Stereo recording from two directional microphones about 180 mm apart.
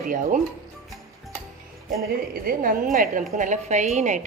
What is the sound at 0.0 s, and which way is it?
Speech, 45° right (ahead or behind).